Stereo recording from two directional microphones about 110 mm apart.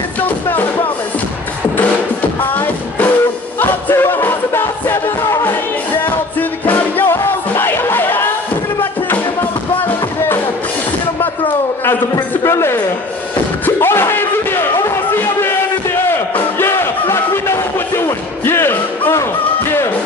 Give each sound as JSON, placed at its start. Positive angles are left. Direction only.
{"t": 3.5, "sound": "music", "side_deg": 20}
{"t": 12.4, "sound": "speech", "side_deg": 25}
{"t": 13.7, "sound": "a sound", "side_deg": 20}
{"t": 16.1, "sound": "music", "side_deg": 20}